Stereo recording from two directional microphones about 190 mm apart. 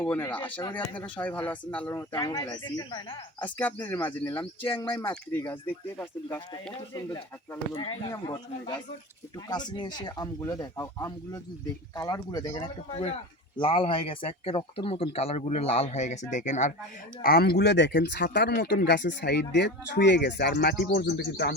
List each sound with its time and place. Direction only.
0.0 s speech: 10° left (ahead or behind)
3.4 s speech: 10° left (ahead or behind); by 16.7 s 40° left (ahead or behind)
17.2 s speech: 55° left (ahead or behind)